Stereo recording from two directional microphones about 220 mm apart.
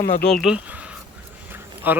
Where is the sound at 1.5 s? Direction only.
10° right (ahead or behind).